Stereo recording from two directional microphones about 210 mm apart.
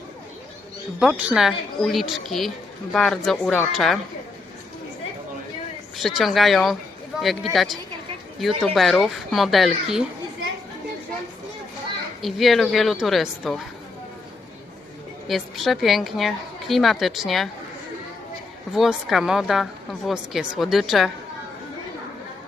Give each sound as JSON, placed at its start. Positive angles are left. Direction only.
{"t": 0.9, "sound": "a woman's voice", "side_deg": -5}
{"t": 6.0, "sound": "a woman's voice", "side_deg": 0}
{"t": 12.2, "sound": "a woman's voice", "side_deg": 0}
{"t": 15.3, "sound": "a woman's voice", "side_deg": 0}
{"t": 18.7, "sound": "a woman's voice", "side_deg": 0}